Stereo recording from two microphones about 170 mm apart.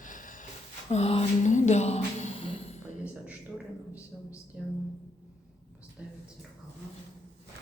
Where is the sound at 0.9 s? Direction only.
40° left (ahead or behind).